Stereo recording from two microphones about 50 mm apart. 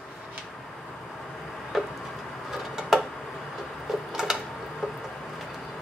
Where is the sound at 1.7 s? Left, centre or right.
Centre.